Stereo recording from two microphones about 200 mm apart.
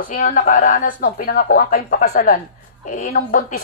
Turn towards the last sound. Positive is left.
turn(degrees=45)  # may be behind; listen again after turning